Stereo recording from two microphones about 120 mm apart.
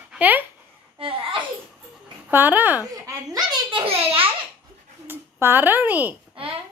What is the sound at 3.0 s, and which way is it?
Speech, 30° right (ahead or behind).